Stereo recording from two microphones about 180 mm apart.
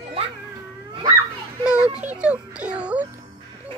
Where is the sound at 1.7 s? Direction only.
5° right (ahead or behind).